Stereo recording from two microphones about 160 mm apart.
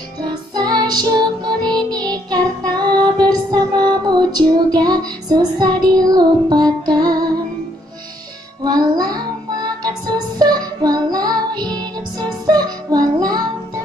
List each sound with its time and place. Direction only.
0.7 s music: 25° right (ahead or behind)
8.6 s music: 25° right (ahead or behind)